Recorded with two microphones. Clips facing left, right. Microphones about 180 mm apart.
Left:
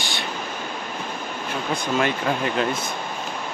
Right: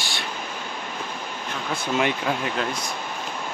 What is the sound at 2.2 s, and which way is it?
Speech, centre (ahead or behind).